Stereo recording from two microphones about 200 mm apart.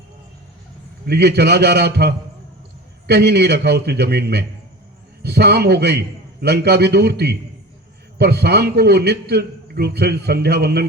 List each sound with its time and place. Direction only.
1.0 s a man's voice: 55° right (ahead or behind)